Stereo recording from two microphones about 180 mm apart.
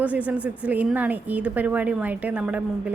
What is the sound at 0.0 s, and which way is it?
A woman's voice, 10° right (ahead or behind).